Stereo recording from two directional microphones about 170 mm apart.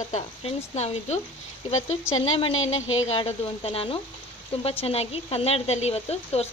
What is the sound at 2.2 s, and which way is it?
Speech, 30° left (ahead or behind).